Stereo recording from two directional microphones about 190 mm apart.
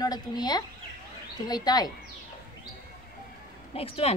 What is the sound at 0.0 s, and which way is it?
A woman's voice, 20° left (ahead or behind).